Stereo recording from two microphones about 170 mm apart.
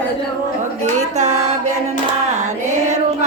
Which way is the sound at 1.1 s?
40° right (ahead or behind).